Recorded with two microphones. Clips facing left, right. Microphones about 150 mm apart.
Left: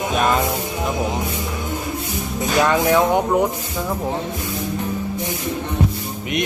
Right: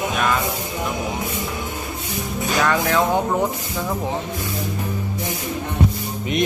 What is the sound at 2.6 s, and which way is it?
Speech, 20° left (ahead or behind).